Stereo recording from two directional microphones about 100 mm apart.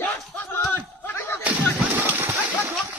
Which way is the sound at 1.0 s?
25° left (ahead or behind).